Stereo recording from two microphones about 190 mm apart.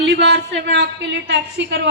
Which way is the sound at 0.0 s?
65° right (ahead or behind).